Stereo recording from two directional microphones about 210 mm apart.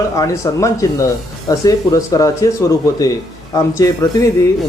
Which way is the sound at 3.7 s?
15° left (ahead or behind).